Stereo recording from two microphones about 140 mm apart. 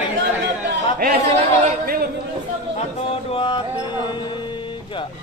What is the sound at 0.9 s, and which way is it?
A man's voice, 90° right.